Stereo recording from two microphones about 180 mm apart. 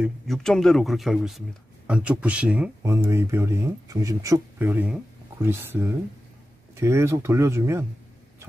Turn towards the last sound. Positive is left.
turn(degrees=-15)  # may be behind; listen again after turning